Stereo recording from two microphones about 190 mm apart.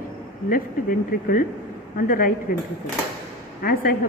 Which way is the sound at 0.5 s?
45° left (ahead or behind).